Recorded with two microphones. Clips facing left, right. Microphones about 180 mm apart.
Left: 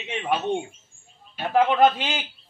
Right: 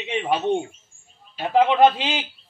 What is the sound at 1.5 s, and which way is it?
Speech, 20° right (ahead or behind).